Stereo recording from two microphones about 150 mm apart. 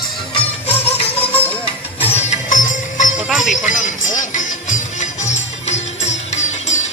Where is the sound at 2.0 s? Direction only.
55° left (ahead or behind).